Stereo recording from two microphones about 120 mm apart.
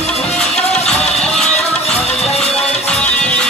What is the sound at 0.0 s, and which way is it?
Music, 65° left (ahead or behind).